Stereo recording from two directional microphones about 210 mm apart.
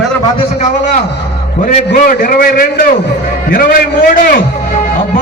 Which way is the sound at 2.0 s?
40° left (ahead or behind).